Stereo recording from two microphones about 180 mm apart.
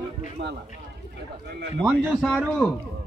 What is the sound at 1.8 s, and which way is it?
Speech, 10° right (ahead or behind).